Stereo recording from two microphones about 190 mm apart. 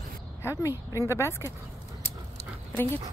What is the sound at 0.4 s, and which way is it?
A woman's voice, 15° left (ahead or behind).